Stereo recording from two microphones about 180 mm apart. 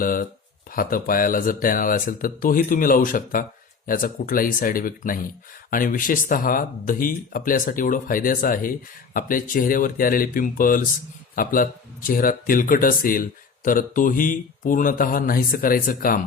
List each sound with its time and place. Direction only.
0.0 s speech: 50° left (ahead or behind)